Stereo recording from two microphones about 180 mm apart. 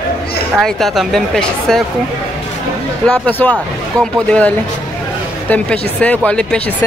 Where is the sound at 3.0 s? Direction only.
10° left (ahead or behind).